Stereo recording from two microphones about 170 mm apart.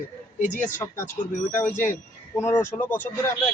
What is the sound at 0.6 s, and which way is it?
Speech, 15° left (ahead or behind).